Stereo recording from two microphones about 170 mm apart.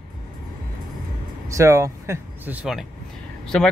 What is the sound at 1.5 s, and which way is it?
Speech, 15° right (ahead or behind).